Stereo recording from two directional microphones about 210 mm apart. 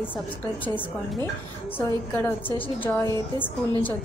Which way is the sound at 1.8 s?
10° left (ahead or behind).